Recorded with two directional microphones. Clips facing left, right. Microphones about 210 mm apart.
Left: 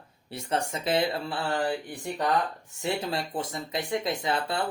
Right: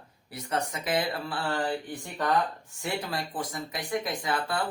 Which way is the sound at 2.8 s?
25° left (ahead or behind).